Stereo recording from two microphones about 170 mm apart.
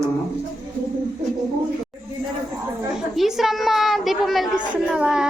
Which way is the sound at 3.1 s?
Centre (ahead or behind).